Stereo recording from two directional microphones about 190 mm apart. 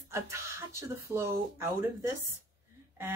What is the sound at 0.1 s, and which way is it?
Speech, 15° right (ahead or behind).